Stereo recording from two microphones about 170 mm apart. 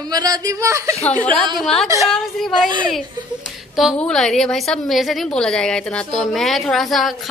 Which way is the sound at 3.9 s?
5° left (ahead or behind).